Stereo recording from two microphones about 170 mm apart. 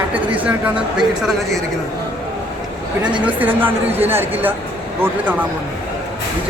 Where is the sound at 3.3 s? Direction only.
10° right (ahead or behind).